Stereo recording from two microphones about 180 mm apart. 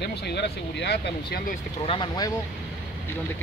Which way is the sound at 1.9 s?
25° left (ahead or behind).